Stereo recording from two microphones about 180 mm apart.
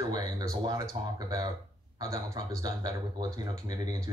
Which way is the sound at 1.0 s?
35° right (ahead or behind).